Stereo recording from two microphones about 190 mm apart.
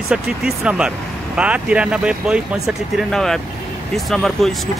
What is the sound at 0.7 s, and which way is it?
Speech, 5° right (ahead or behind).